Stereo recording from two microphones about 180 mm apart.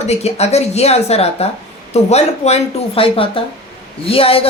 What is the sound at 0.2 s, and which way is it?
Speech, 35° left (ahead or behind).